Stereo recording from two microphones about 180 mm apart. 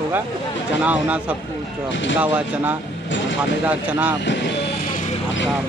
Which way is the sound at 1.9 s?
90° left.